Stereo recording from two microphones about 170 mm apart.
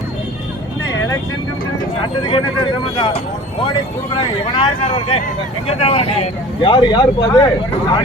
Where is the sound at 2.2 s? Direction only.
25° left (ahead or behind).